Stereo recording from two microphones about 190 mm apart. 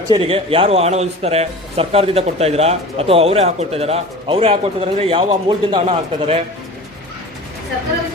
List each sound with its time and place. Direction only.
0.1 s a man's voice: 30° right (ahead or behind)